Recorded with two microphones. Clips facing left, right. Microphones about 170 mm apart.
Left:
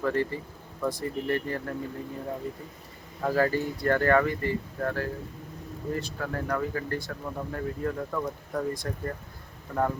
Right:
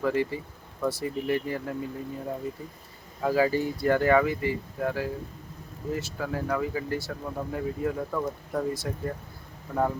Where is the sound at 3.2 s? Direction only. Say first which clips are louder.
Right 1 dB; 5° right (ahead or behind).